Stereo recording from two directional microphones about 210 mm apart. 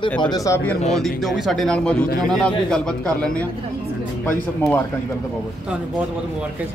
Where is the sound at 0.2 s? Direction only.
15° left (ahead or behind).